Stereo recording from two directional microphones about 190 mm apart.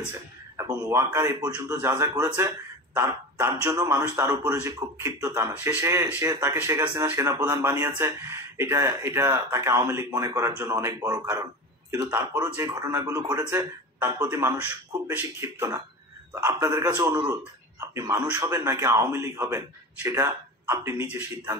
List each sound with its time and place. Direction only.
0.6 s speech: 15° right (ahead or behind)